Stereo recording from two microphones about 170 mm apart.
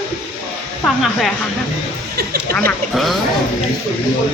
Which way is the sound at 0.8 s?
Centre (ahead or behind).